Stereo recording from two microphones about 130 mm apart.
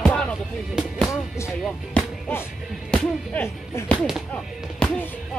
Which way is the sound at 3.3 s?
20° left (ahead or behind).